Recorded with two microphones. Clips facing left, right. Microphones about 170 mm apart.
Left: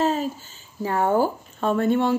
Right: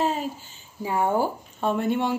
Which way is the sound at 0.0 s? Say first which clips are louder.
Left 3 dB; 10° right (ahead or behind).